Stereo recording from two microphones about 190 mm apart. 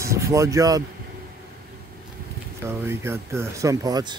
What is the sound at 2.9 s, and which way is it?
Speech, 15° right (ahead or behind).